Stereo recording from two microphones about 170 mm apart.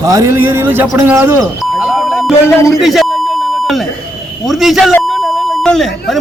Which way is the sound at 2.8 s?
Centre (ahead or behind).